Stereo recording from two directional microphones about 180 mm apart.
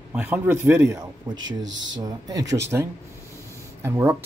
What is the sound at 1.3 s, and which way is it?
Speech, 90° right.